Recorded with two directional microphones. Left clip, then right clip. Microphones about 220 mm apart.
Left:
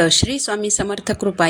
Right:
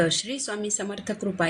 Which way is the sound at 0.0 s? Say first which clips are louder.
Left 9 dB; 40° left (ahead or behind).